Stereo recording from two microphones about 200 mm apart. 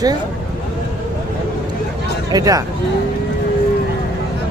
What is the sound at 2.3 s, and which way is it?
Speech, 15° right (ahead or behind).